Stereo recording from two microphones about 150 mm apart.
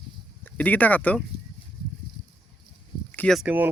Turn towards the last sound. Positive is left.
turn(degrees=-10)  # may be behind; listen again after turning